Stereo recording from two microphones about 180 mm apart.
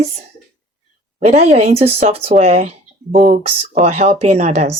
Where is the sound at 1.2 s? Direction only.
40° right (ahead or behind).